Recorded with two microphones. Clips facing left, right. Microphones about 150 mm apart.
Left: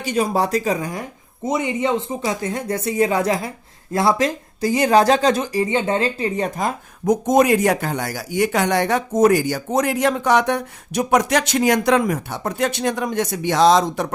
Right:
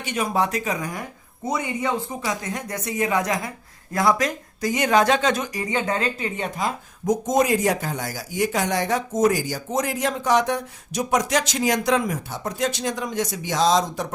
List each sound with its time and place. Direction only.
0.0 s speech: 35° left (ahead or behind); by 14.1 s 65° left (ahead or behind)